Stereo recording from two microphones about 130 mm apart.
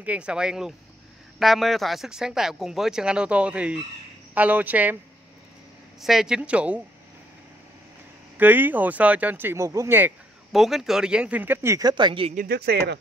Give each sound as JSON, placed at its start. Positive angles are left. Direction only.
{"t": 0.0, "sound": "speech", "side_deg": -10}
{"t": 5.9, "sound": "speech", "side_deg": -5}
{"t": 8.4, "sound": "speech", "side_deg": -15}
{"t": 10.5, "sound": "speech", "side_deg": 0}
{"t": 11.9, "sound": "speech", "side_deg": -40}